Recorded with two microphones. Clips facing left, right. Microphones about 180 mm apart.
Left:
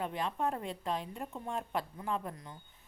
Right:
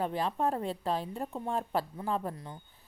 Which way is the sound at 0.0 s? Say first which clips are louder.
Right 4 dB; 35° right (ahead or behind).